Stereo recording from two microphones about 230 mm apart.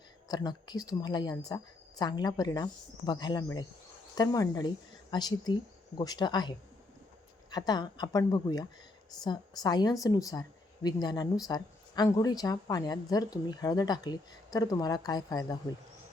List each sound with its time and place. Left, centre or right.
0.3 s speech: centre
7.5 s speech: centre